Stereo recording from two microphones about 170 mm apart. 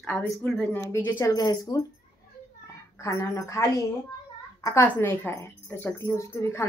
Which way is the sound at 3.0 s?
15° left (ahead or behind).